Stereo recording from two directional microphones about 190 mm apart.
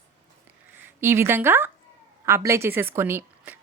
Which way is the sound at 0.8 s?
10° right (ahead or behind).